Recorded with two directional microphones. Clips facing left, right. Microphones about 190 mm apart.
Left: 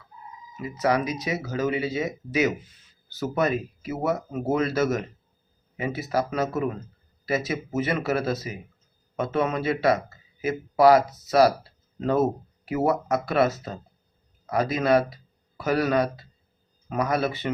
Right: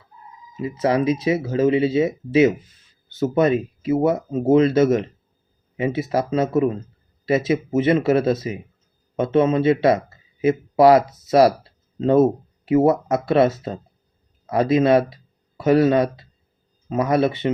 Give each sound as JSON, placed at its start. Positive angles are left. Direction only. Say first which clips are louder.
{"t": 0.5, "sound": "speech", "louder": "right 4 dB", "side_deg": -25}